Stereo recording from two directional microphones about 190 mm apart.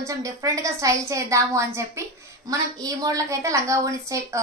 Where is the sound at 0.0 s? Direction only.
15° right (ahead or behind).